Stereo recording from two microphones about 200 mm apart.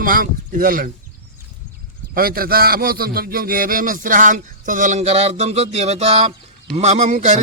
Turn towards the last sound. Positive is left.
turn(degrees=-35)  # may be behind; listen again after turning